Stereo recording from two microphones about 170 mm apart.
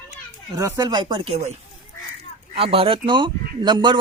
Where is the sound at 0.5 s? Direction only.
20° right (ahead or behind); by 1.5 s 35° right (ahead or behind).